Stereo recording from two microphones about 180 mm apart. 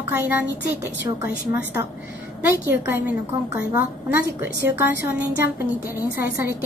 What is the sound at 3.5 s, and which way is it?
Speech, 55° left (ahead or behind).